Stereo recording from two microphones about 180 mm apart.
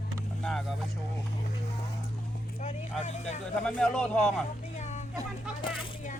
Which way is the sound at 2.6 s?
40° left (ahead or behind).